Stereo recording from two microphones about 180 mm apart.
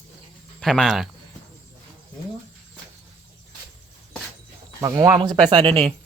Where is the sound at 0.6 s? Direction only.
Centre (ahead or behind).